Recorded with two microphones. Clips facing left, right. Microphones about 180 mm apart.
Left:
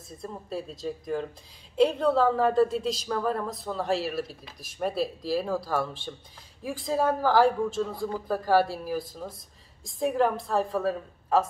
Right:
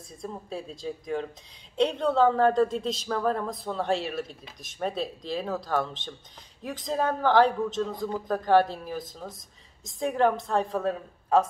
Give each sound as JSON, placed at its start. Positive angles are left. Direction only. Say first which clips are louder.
{"t": 0.2, "sound": "a woman's voice", "louder": "left 1 dB", "side_deg": 0}